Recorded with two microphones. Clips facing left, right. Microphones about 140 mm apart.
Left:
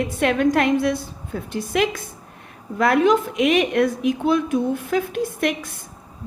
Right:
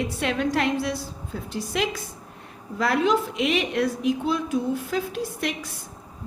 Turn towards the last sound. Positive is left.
turn(degrees=50)  # may be behind; listen again after turning